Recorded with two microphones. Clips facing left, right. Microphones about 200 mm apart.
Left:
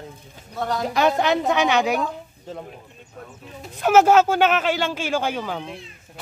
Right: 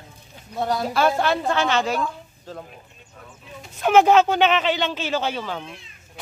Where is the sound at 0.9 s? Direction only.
15° left (ahead or behind).